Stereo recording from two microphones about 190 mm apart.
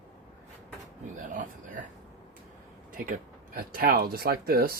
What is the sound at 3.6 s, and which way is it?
Speech, 50° right (ahead or behind).